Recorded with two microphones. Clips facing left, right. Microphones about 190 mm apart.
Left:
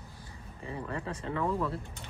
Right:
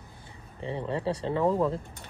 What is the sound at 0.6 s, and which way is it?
Speech, 30° right (ahead or behind).